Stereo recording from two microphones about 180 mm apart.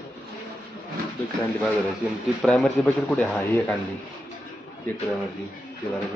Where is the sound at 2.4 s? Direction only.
5° left (ahead or behind).